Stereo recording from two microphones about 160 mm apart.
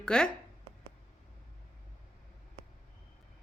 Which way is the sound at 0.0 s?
5° left (ahead or behind).